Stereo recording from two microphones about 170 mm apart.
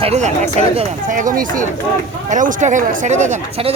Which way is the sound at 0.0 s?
40° right (ahead or behind).